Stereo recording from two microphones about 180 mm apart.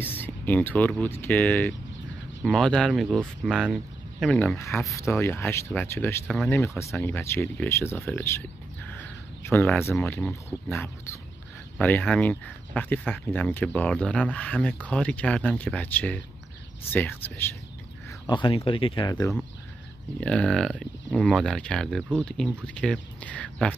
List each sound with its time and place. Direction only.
0.0 s speech: 10° left (ahead or behind)
11.8 s speech: 10° left (ahead or behind)
18.2 s speech: 25° left (ahead or behind)
20.2 s speech: 5° left (ahead or behind)